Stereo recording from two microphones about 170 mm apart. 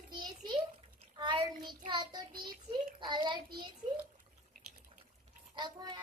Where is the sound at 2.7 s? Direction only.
25° right (ahead or behind).